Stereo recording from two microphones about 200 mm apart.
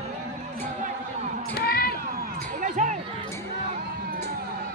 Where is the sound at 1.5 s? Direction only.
50° left (ahead or behind).